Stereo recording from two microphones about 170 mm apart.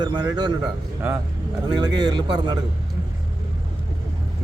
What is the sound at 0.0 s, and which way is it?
Speech, 25° right (ahead or behind).